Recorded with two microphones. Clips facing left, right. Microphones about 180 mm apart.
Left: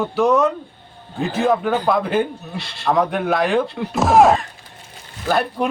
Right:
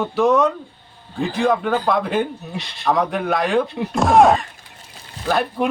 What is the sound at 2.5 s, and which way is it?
Speech, 15° right (ahead or behind).